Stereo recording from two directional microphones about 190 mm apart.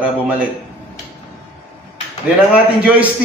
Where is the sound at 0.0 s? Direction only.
5° right (ahead or behind).